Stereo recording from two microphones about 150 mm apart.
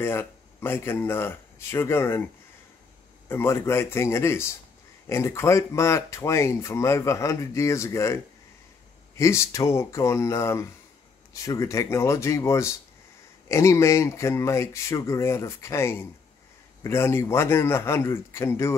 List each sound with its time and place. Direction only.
0.0 s speech: 15° left (ahead or behind)
3.3 s a man's voice: 15° left (ahead or behind)